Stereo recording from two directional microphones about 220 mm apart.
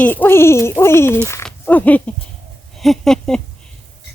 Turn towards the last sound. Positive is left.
turn(degrees=0)  # may be behind; listen again after turning